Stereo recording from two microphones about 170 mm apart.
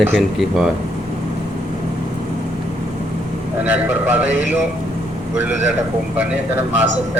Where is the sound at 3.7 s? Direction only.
10° right (ahead or behind).